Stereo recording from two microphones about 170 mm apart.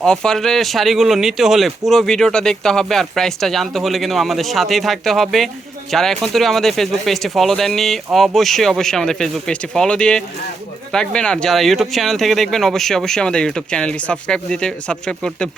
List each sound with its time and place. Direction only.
0.0 s speech: 5° left (ahead or behind)